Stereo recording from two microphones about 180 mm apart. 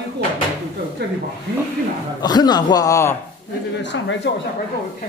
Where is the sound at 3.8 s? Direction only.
80° left.